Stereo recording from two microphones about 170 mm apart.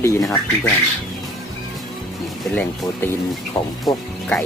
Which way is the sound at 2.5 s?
10° left (ahead or behind).